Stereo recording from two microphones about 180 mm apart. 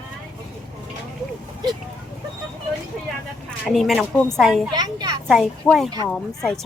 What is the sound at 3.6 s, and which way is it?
A woman's voice, centre (ahead or behind).